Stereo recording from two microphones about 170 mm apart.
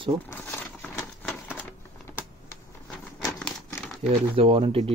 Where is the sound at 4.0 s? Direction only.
35° right (ahead or behind).